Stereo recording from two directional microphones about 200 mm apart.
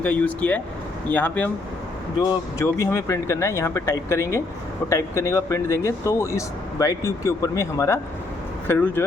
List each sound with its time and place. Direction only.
0.0 s speech: 10° left (ahead or behind)
2.2 s speech: 20° left (ahead or behind)